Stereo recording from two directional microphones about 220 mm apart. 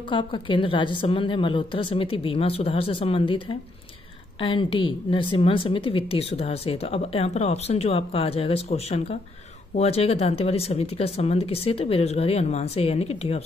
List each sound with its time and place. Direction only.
0.1 s a woman's voice: 20° left (ahead or behind)